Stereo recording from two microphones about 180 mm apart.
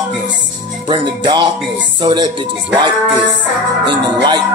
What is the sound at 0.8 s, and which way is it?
Music, 25° right (ahead or behind).